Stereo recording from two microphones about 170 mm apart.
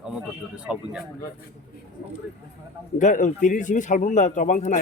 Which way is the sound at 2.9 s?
45° left (ahead or behind).